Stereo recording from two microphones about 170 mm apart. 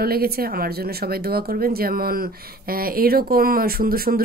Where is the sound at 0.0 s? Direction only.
65° right (ahead or behind).